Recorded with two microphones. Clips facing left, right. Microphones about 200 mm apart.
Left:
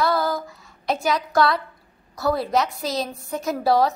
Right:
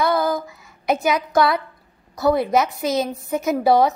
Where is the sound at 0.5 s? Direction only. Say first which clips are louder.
Right 4 dB; centre (ahead or behind).